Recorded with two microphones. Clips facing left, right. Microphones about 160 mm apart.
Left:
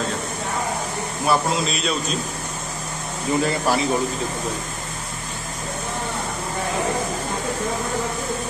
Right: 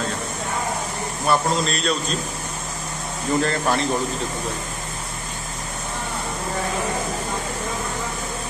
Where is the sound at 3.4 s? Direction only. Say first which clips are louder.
Left 1 dB; 5° left (ahead or behind).